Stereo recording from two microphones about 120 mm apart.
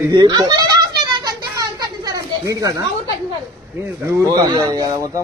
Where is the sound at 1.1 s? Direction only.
35° right (ahead or behind).